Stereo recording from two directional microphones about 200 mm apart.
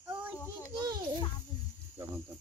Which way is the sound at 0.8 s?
20° right (ahead or behind).